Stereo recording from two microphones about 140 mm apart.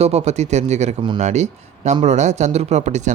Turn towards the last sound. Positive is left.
turn(degrees=-55)  # may be behind; listen again after turning